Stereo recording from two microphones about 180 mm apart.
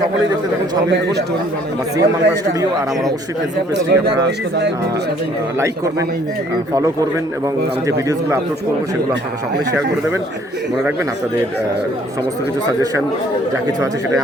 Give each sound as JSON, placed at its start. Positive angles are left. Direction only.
{"t": 2.0, "sound": "a man's voice", "side_deg": -20}
{"t": 3.8, "sound": "speech", "side_deg": -70}
{"t": 5.5, "sound": "a man's voice", "side_deg": -15}